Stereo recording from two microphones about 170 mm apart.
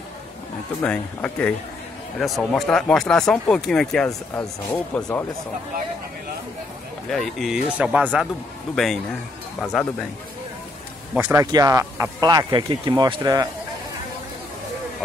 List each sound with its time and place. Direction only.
0.8 s speech: 5° left (ahead or behind)
7.1 s speech: centre (ahead or behind)
11.1 s speech: 15° right (ahead or behind)